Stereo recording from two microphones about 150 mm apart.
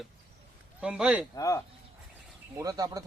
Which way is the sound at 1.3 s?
20° left (ahead or behind).